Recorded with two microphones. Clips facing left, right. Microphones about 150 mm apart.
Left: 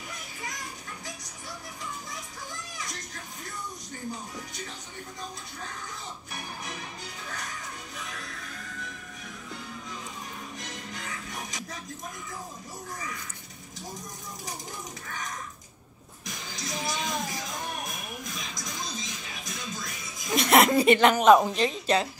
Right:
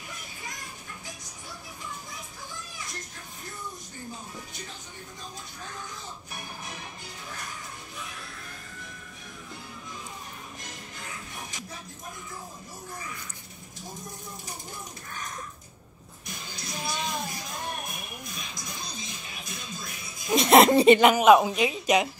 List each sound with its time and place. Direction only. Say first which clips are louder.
16.3 s music: left 3 dB; 90° left
20.2 s laughter: right 4 dB; 20° right (ahead or behind)
21.0 s a woman's voice: right 1 dB; 10° right (ahead or behind)